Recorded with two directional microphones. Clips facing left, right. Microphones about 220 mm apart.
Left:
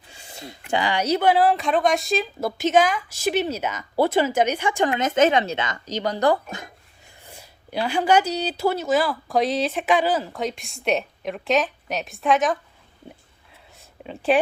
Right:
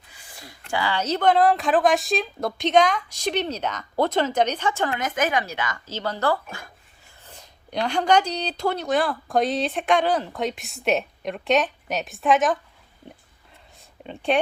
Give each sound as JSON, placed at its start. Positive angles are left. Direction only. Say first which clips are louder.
{"t": 0.1, "sound": "a sound", "louder": "left 7 dB", "side_deg": 25}
{"t": 0.7, "sound": "speech", "louder": "left 3 dB", "side_deg": 15}
{"t": 14.0, "sound": "speech", "louder": "left 3 dB", "side_deg": 5}